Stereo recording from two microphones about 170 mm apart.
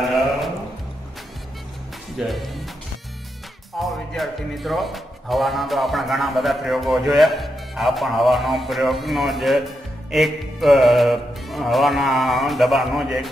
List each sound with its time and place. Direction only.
2.1 s speech: centre (ahead or behind)
3.8 s speech: centre (ahead or behind)